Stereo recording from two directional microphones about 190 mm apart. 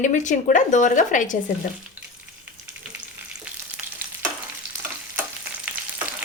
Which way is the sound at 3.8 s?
10° right (ahead or behind).